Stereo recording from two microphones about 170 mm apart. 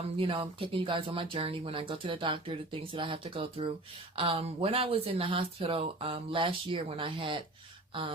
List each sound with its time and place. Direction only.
0.2 s speech: 30° right (ahead or behind)